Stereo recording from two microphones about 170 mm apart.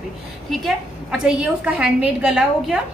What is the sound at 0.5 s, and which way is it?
A woman's voice, centre (ahead or behind).